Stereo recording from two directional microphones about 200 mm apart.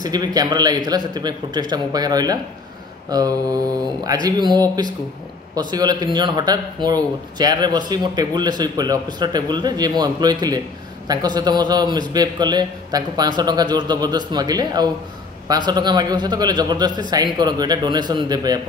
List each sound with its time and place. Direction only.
0.0 s a man's voice: 20° right (ahead or behind)